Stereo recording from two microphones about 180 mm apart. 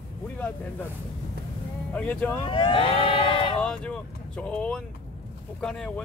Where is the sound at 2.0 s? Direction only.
10° left (ahead or behind).